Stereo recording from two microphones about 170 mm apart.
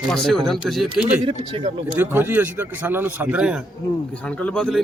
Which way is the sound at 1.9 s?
10° right (ahead or behind).